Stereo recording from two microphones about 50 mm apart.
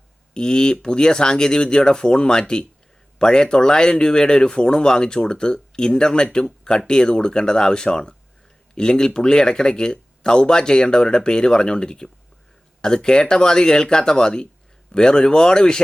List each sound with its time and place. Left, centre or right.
0.3 s speech: centre